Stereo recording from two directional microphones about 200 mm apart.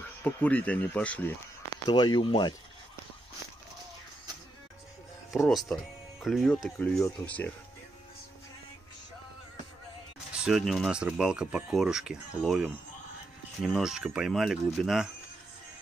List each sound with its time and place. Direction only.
0.0 s speech: 10° left (ahead or behind)
1.9 s speech: 20° left (ahead or behind)
5.3 s speech: centre (ahead or behind)
10.4 s speech: centre (ahead or behind)